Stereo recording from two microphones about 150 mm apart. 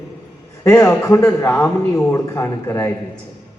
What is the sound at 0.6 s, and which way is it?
A man's voice, 20° left (ahead or behind).